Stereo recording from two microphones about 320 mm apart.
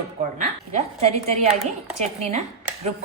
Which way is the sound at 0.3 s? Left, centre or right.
Centre.